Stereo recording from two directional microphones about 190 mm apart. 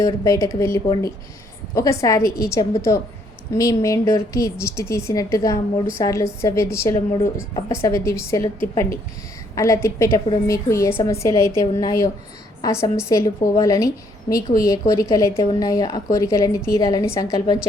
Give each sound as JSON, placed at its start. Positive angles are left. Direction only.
{"t": 0.0, "sound": "a woman's voice", "side_deg": 15}
{"t": 9.6, "sound": "a woman's voice", "side_deg": 15}